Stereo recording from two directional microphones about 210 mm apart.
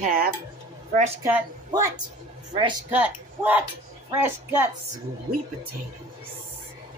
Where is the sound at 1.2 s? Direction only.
10° right (ahead or behind).